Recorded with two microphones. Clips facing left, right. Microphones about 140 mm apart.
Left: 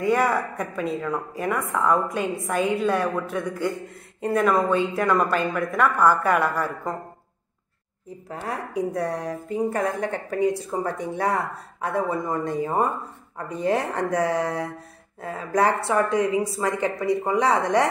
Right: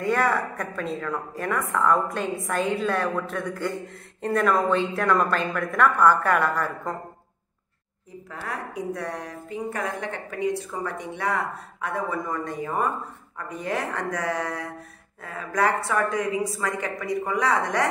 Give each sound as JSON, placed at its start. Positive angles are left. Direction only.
{"t": 0.0, "sound": "a woman's voice", "side_deg": 10}
{"t": 8.3, "sound": "a woman's voice", "side_deg": 30}